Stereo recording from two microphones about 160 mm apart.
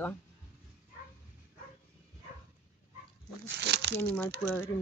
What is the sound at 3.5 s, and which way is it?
Speech, 90° right.